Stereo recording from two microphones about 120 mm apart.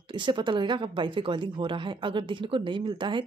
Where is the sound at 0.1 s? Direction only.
40° right (ahead or behind).